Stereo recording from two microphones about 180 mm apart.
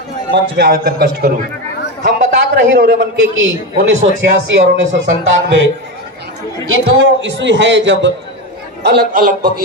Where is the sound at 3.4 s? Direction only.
90° right.